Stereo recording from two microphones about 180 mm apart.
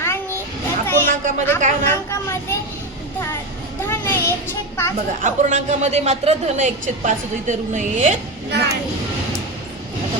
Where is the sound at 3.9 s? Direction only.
10° left (ahead or behind).